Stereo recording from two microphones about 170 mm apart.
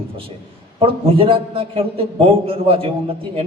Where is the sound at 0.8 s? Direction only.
30° right (ahead or behind).